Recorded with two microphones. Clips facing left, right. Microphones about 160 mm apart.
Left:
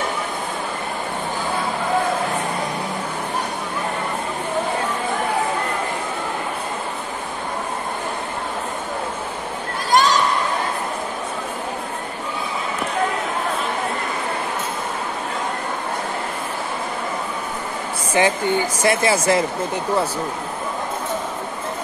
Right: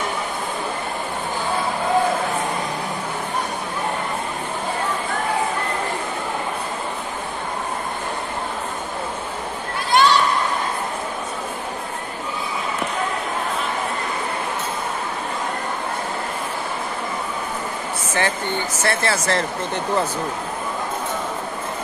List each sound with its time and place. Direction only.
9.8 s children playing: 40° left (ahead or behind)
18.2 s speech: 15° left (ahead or behind)